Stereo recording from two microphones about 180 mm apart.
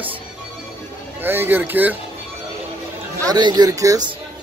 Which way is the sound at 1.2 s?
10° right (ahead or behind).